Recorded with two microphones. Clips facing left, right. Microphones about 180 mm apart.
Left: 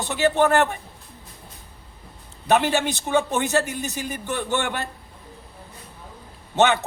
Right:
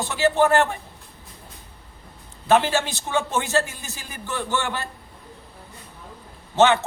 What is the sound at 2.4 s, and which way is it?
A man's voice, 15° left (ahead or behind).